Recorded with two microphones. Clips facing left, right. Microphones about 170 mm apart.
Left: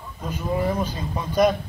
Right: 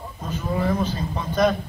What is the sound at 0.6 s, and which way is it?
Speech, 10° left (ahead or behind).